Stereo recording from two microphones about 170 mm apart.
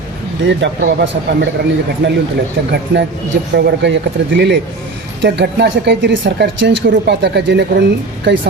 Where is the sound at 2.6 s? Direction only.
70° right (ahead or behind).